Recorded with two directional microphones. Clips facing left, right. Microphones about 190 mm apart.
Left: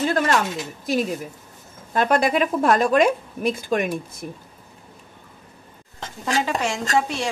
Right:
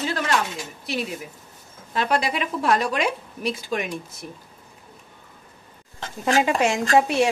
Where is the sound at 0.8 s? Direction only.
45° left (ahead or behind).